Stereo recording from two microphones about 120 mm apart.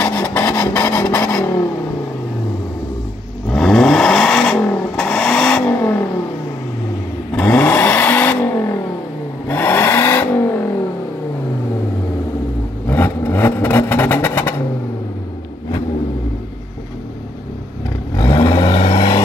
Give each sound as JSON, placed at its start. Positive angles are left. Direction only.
{"t": 0.0, "sound": "vehicle", "side_deg": 15}
{"t": 3.4, "sound": "vehicle", "side_deg": 5}
{"t": 5.7, "sound": "vehicle", "side_deg": 20}
{"t": 7.3, "sound": "vehicle", "side_deg": 15}
{"t": 12.8, "sound": "vehicle", "side_deg": 15}
{"t": 18.3, "sound": "vehicle", "side_deg": 30}